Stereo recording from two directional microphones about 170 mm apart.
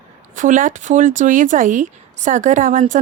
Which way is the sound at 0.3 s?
50° right (ahead or behind).